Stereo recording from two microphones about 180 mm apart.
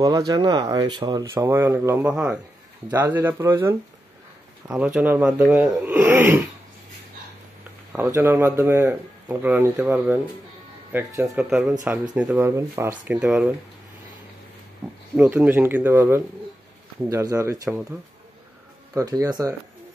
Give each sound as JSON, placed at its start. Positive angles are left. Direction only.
{"t": 0.0, "sound": "a man's voice", "side_deg": -20}
{"t": 7.9, "sound": "a man's voice", "side_deg": -10}
{"t": 12.4, "sound": "a man's voice", "side_deg": -15}
{"t": 15.1, "sound": "a man's voice", "side_deg": -10}
{"t": 18.9, "sound": "speech", "side_deg": -20}